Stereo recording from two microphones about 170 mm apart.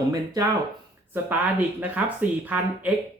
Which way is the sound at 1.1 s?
10° right (ahead or behind).